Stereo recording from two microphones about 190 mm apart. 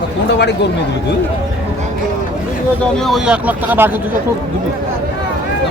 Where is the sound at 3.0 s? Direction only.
Centre (ahead or behind).